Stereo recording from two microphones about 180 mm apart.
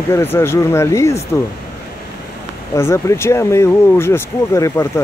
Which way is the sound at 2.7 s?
15° left (ahead or behind).